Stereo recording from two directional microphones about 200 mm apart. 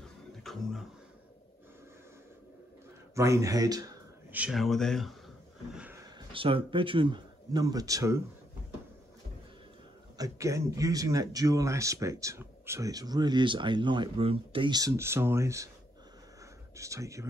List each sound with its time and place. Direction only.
0.4 s a sound: centre (ahead or behind)
3.2 s speech: 15° right (ahead or behind); by 5.1 s centre (ahead or behind)
5.7 s a sound: 5° right (ahead or behind)
6.1 s speech: 25° right (ahead or behind)
10.1 s speech: 15° right (ahead or behind)
16.7 s speech: 15° right (ahead or behind)